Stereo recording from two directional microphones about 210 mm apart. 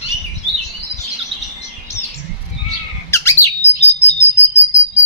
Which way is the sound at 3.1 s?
15° left (ahead or behind).